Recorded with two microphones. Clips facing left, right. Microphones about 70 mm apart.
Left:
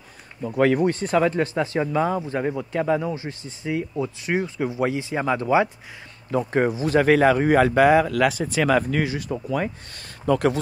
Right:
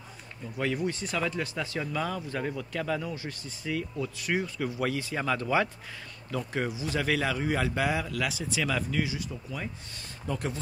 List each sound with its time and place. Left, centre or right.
0.5 s speech: left
6.3 s speech: left
9.3 s speech: left
10.2 s speech: left